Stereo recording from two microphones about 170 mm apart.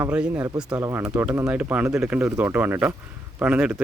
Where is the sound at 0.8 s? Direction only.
20° right (ahead or behind).